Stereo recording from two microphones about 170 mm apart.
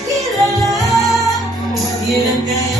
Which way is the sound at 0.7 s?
Centre (ahead or behind).